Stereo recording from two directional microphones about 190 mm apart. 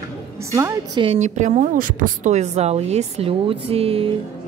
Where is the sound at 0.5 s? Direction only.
15° right (ahead or behind).